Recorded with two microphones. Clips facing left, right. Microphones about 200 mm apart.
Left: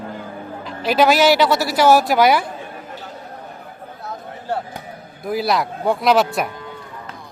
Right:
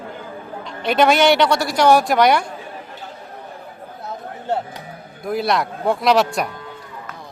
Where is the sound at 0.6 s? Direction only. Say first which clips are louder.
Even; centre (ahead or behind).